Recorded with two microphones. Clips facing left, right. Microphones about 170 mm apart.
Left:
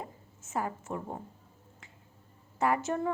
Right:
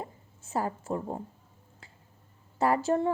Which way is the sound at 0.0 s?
35° right (ahead or behind).